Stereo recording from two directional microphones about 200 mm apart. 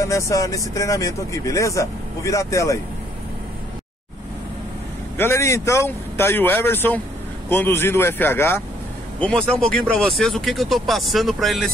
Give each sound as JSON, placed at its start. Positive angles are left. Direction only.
{"t": 0.0, "sound": "speech", "side_deg": 15}
{"t": 5.1, "sound": "speech", "side_deg": 10}